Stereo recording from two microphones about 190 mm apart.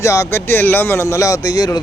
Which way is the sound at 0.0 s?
15° left (ahead or behind).